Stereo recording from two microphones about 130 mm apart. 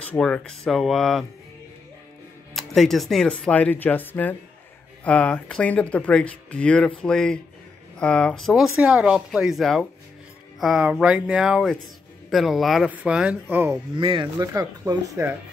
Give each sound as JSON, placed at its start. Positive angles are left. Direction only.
{"t": 0.0, "sound": "speech", "side_deg": 10}
{"t": 2.5, "sound": "speech", "side_deg": 0}
{"t": 13.9, "sound": "speech", "side_deg": -40}
{"t": 14.2, "sound": "speech", "side_deg": -25}